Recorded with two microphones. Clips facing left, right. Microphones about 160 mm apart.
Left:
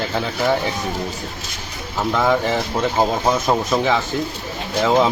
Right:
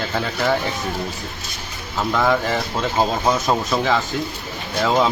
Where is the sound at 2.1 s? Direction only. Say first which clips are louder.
Left 1 dB; 5° left (ahead or behind).